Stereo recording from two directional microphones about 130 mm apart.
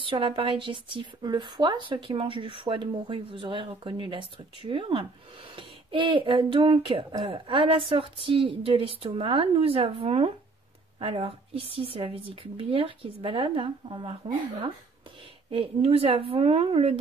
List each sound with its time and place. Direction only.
0.0 s a woman's voice: 45° right (ahead or behind)